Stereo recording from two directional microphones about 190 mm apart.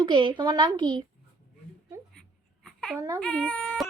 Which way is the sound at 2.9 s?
15° right (ahead or behind).